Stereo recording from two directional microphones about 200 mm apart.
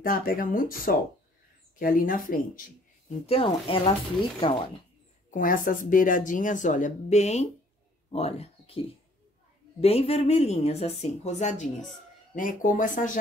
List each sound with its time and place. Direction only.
0.0 s speech: 45° left (ahead or behind)
3.3 s speech: 30° left (ahead or behind)
5.3 s a woman's voice: 45° left (ahead or behind)